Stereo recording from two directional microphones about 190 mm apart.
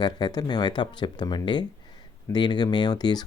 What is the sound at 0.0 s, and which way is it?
Speech, 20° left (ahead or behind).